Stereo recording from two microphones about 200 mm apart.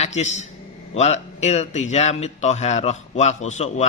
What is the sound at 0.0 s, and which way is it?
A man's voice, 35° left (ahead or behind).